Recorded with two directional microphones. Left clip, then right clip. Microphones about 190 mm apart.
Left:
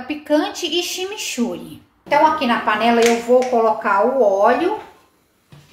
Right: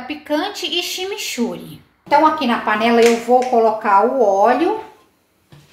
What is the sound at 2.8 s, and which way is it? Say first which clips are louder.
A woman's voice: right 4 dB; 25° right (ahead or behind).